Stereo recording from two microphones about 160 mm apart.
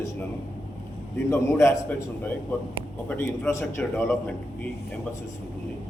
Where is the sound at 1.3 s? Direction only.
20° left (ahead or behind).